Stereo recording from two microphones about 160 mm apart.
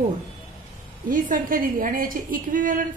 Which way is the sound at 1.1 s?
60° right (ahead or behind).